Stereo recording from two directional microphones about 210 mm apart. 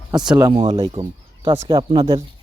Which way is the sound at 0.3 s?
20° right (ahead or behind).